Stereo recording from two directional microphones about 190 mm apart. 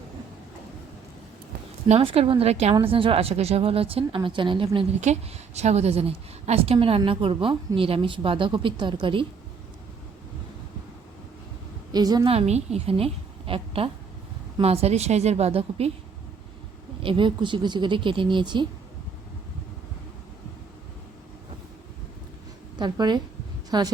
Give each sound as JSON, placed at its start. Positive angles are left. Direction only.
{"t": 1.9, "sound": "a woman's voice", "side_deg": -30}
{"t": 11.9, "sound": "a woman's voice", "side_deg": -20}
{"t": 12.3, "sound": "a woman's voice", "side_deg": -35}
{"t": 17.0, "sound": "a woman's voice", "side_deg": -25}
{"t": 22.8, "sound": "a woman's voice", "side_deg": -20}